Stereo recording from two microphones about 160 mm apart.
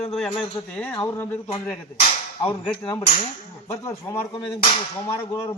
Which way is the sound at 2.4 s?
15° left (ahead or behind).